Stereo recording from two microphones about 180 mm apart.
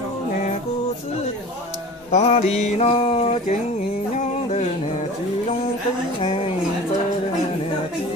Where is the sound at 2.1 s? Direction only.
40° left (ahead or behind).